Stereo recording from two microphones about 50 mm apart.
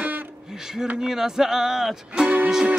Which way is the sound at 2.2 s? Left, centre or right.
Right.